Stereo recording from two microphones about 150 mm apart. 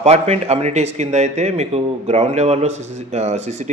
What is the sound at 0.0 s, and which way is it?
Speech, 45° right (ahead or behind).